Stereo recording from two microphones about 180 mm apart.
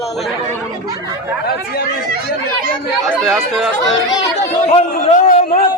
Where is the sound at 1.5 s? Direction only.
60° left (ahead or behind).